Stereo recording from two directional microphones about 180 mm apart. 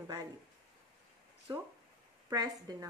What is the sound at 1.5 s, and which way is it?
Speech, 25° right (ahead or behind).